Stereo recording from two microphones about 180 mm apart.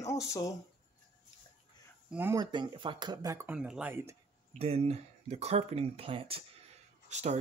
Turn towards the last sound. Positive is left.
turn(degrees=-40)  # may be behind; listen again after turning